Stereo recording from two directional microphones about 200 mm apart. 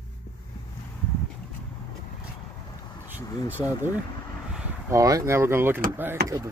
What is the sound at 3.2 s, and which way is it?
Speech, 20° left (ahead or behind).